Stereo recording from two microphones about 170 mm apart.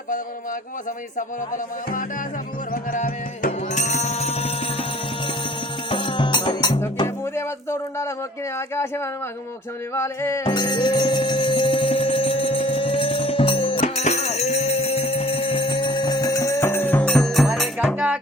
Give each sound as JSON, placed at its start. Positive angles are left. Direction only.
{"t": 1.5, "sound": "music", "side_deg": 50}
{"t": 7.3, "sound": "speech", "side_deg": 15}
{"t": 10.4, "sound": "music", "side_deg": 25}